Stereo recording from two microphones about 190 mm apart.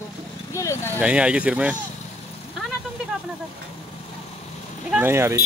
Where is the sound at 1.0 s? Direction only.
5° right (ahead or behind).